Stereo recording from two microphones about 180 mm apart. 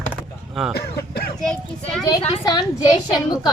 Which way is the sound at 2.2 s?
25° left (ahead or behind).